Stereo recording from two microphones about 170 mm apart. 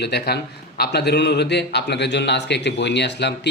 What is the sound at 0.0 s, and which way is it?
A man's voice, 75° left (ahead or behind).